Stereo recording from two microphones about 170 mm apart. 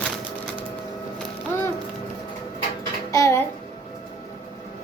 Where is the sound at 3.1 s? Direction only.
20° left (ahead or behind).